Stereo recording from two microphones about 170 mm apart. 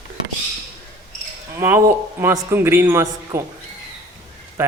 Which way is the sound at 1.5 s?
15° right (ahead or behind).